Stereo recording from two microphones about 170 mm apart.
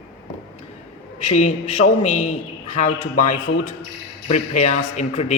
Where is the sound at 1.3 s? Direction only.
40° left (ahead or behind).